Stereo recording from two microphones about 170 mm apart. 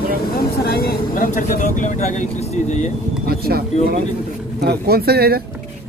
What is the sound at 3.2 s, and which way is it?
Speech, 65° right (ahead or behind).